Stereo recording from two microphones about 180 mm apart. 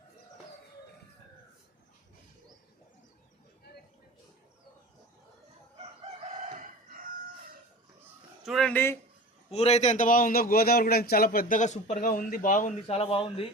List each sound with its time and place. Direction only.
5.8 s chicken: 40° right (ahead or behind)
8.4 s speech: centre (ahead or behind)
9.5 s a man's voice: 35° left (ahead or behind)